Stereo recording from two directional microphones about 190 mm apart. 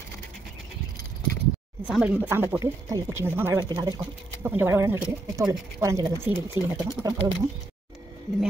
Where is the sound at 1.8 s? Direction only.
5° right (ahead or behind).